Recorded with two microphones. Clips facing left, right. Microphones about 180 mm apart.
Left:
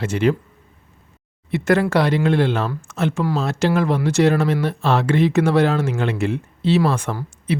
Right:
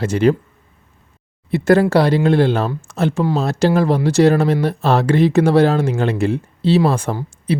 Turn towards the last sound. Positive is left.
turn(degrees=-35)  # may be behind; listen again after turning